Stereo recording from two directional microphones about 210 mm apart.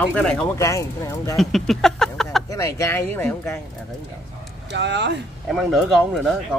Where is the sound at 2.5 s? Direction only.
15° left (ahead or behind).